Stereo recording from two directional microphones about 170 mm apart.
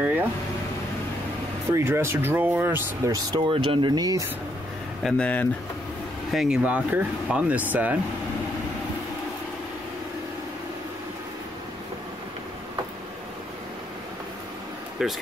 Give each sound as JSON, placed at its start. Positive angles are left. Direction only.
{"t": 0.0, "sound": "vehicle", "side_deg": -10}
{"t": 1.7, "sound": "speech", "side_deg": -15}
{"t": 5.0, "sound": "speech", "side_deg": 5}
{"t": 6.3, "sound": "speech", "side_deg": -5}
{"t": 15.0, "sound": "speech", "side_deg": -5}